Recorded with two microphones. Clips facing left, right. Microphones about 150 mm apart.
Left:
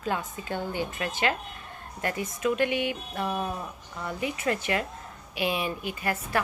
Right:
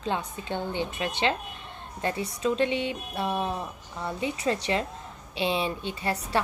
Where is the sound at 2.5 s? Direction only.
25° right (ahead or behind).